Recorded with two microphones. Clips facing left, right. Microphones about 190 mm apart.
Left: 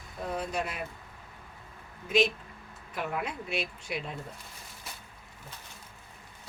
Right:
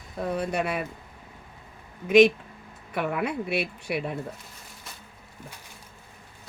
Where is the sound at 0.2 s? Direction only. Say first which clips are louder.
Right 5 dB; 65° right (ahead or behind).